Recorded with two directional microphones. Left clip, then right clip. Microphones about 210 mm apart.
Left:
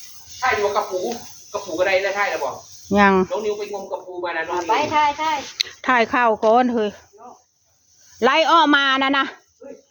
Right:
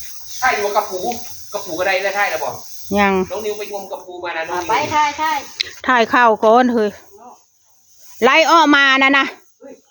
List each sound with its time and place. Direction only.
0.3 s a sound: 35° right (ahead or behind)
1.5 s speech: 35° right (ahead or behind)
2.9 s speech: 5° left (ahead or behind)
3.3 s speech: 30° right (ahead or behind)
4.7 s speech: 5° left (ahead or behind)
6.0 s speech: 20° right (ahead or behind)
8.2 s speech: 20° right (ahead or behind)